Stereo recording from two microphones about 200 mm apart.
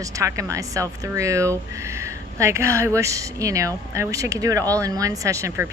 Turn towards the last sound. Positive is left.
turn(degrees=-10)  # may be behind; listen again after turning